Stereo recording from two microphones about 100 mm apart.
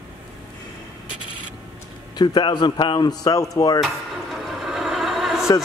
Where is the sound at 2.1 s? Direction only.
45° left (ahead or behind).